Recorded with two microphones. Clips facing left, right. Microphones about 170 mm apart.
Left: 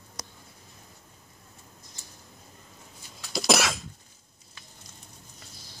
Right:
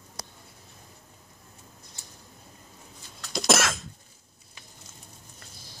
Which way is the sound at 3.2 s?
Centre (ahead or behind).